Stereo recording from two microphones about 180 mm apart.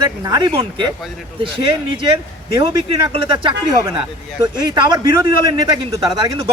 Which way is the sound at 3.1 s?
25° right (ahead or behind).